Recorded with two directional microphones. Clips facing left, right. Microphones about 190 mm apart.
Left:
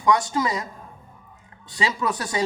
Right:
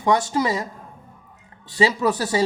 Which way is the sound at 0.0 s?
30° right (ahead or behind).